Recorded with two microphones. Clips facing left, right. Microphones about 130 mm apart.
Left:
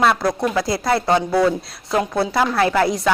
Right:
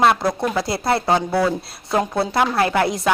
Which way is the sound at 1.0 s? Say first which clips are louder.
Left 3 dB; 5° right (ahead or behind).